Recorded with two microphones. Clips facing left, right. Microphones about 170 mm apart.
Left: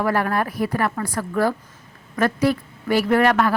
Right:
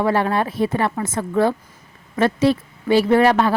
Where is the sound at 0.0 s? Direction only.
25° right (ahead or behind).